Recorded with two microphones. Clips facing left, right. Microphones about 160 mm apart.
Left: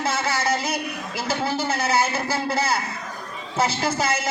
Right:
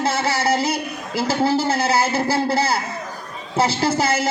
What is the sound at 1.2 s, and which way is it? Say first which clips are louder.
A man's voice: right 7 dB; 30° right (ahead or behind).